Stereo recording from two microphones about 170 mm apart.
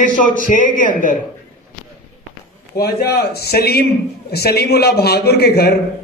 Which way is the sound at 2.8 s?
70° left (ahead or behind).